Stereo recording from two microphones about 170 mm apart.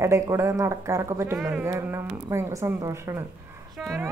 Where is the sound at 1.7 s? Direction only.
15° right (ahead or behind).